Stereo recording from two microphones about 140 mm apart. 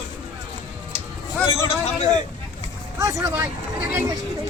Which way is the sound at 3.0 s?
20° right (ahead or behind).